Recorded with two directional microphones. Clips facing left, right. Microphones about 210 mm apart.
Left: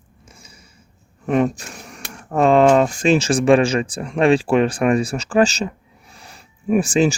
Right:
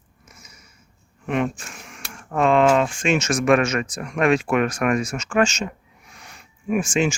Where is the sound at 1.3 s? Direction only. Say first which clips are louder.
Left 5 dB; 40° left (ahead or behind).